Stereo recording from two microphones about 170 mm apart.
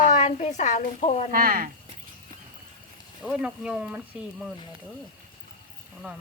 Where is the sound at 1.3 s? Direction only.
55° right (ahead or behind).